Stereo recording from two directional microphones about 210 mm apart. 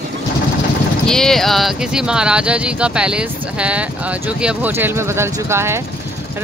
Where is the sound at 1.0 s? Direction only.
Centre (ahead or behind).